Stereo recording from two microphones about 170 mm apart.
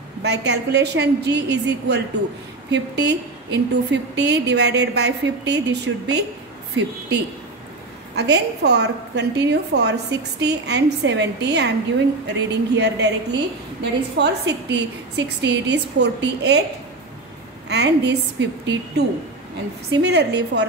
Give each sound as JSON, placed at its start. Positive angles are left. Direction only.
{"t": 0.2, "sound": "a woman's voice", "side_deg": -85}
{"t": 8.2, "sound": "a woman's voice", "side_deg": -80}
{"t": 17.6, "sound": "a woman's voice", "side_deg": -80}